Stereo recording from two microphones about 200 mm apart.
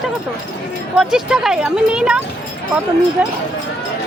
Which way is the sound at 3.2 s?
5° right (ahead or behind).